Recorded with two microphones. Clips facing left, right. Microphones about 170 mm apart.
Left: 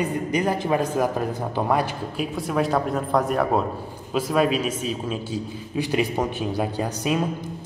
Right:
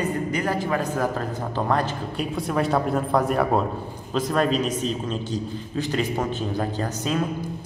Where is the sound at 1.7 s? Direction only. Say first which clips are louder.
Even; 5° left (ahead or behind).